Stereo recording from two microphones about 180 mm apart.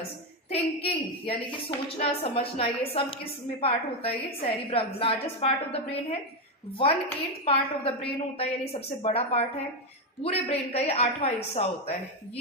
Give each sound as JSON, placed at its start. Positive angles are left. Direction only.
{"t": 0.5, "sound": "a woman's voice", "side_deg": 30}
{"t": 7.4, "sound": "a woman's voice", "side_deg": 30}